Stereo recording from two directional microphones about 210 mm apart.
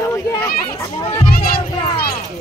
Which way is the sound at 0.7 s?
15° left (ahead or behind).